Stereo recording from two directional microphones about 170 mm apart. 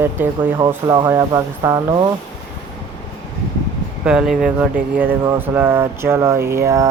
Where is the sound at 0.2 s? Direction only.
10° right (ahead or behind).